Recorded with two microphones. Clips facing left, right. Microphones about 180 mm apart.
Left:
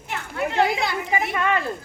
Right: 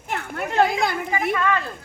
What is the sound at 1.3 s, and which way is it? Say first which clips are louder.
Speech: right 3 dB; 20° left (ahead or behind).